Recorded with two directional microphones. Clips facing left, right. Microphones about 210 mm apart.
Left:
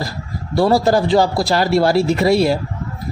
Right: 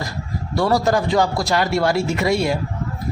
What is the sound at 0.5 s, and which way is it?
A man's voice, 30° left (ahead or behind).